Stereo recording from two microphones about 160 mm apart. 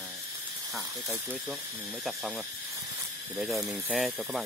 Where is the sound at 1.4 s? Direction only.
Centre (ahead or behind).